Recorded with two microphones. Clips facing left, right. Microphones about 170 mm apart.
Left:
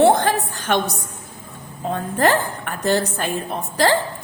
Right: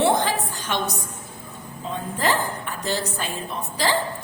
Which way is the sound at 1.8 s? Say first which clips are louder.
Left 7 dB; 55° left (ahead or behind).